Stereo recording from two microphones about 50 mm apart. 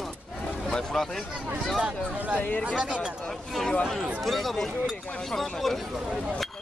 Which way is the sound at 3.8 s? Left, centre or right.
Centre.